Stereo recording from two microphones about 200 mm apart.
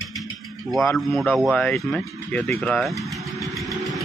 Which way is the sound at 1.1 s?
Centre (ahead or behind).